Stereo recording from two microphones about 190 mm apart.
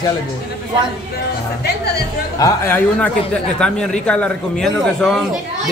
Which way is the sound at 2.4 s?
10° left (ahead or behind).